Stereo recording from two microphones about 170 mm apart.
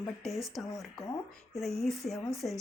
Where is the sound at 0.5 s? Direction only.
Centre (ahead or behind).